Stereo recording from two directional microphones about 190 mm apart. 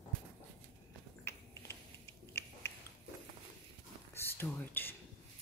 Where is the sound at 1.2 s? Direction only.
15° left (ahead or behind).